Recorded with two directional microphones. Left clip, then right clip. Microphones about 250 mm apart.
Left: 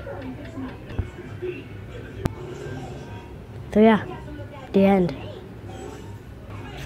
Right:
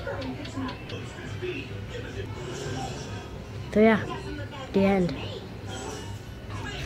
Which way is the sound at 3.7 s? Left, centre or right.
Left.